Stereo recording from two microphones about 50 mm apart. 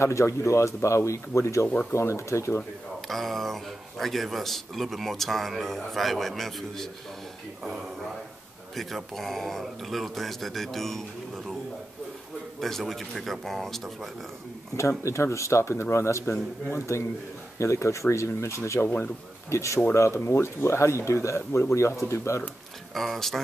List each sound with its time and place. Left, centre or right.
0.0 s speech: left
3.1 s a man's voice: centre
8.7 s a man's voice: centre
12.5 s a man's voice: centre
14.8 s speech: left
19.5 s speech: left
19.9 s speech: left
22.9 s a man's voice: centre